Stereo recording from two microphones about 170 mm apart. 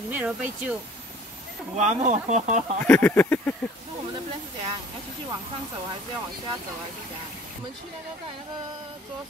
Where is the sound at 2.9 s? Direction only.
10° left (ahead or behind).